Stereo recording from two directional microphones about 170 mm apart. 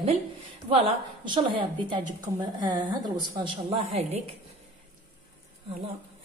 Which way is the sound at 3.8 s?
35° right (ahead or behind).